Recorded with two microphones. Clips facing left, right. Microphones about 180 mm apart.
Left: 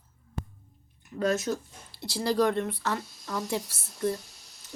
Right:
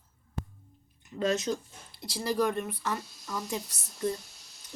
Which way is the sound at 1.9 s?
10° right (ahead or behind).